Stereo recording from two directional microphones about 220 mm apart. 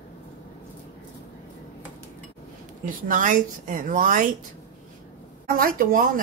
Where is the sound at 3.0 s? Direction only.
35° right (ahead or behind).